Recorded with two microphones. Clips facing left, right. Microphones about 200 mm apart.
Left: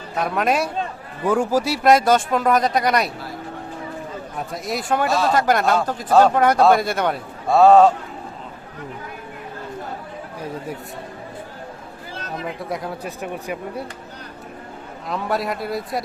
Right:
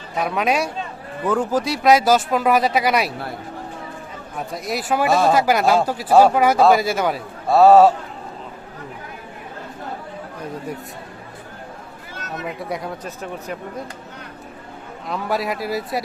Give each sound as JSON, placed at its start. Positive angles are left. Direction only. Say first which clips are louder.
{"t": 0.2, "sound": "speech", "louder": "even", "side_deg": 0}
{"t": 4.4, "sound": "speech", "louder": "right 1 dB", "side_deg": 0}
{"t": 5.0, "sound": "speech", "louder": "right 5 dB", "side_deg": -55}
{"t": 5.3, "sound": "speech", "louder": "right 2 dB", "side_deg": -5}
{"t": 12.1, "sound": "chatter", "louder": "left 1 dB", "side_deg": 30}
{"t": 12.5, "sound": "speech", "louder": "right 1 dB", "side_deg": 0}
{"t": 15.1, "sound": "speech", "louder": "even", "side_deg": 0}